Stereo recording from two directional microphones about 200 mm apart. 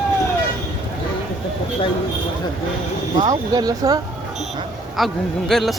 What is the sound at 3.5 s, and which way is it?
Speech, 20° right (ahead or behind).